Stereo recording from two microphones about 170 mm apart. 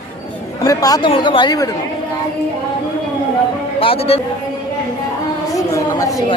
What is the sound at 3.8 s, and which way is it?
Speech, 35° left (ahead or behind).